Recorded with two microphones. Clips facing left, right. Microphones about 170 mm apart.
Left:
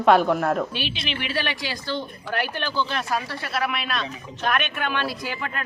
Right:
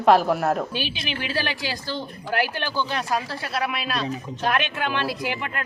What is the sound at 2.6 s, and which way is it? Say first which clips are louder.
Speech: even; 15° right (ahead or behind).